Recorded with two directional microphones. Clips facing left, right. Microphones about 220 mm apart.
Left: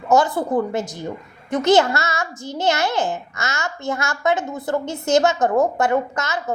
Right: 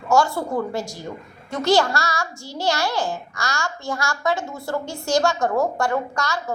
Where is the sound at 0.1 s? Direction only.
20° left (ahead or behind).